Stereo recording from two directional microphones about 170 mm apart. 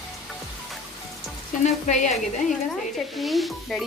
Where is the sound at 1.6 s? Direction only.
45° left (ahead or behind).